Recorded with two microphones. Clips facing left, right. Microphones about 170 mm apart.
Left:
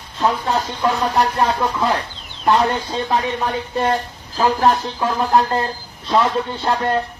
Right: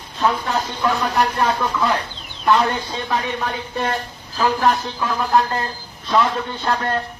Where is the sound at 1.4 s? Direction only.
35° left (ahead or behind).